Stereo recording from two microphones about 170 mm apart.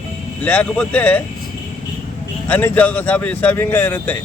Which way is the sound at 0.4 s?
5° left (ahead or behind).